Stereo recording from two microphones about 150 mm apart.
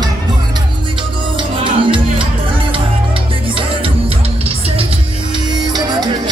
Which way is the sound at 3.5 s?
35° right (ahead or behind).